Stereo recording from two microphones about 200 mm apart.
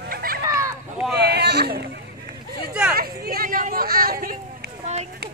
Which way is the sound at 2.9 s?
50° right (ahead or behind).